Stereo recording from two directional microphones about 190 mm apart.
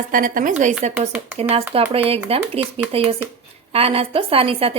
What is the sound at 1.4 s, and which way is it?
A woman's voice, 30° right (ahead or behind).